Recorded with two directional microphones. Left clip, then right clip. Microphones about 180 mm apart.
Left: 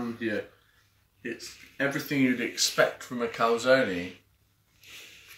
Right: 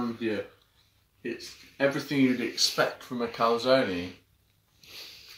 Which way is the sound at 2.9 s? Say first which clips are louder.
Left 1 dB; 20° left (ahead or behind).